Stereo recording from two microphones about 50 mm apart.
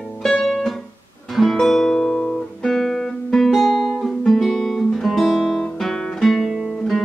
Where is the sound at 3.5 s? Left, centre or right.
Centre.